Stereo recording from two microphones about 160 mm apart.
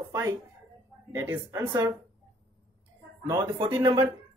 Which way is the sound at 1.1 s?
20° right (ahead or behind).